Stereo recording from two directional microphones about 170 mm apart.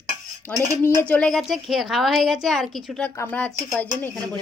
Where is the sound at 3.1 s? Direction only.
10° left (ahead or behind).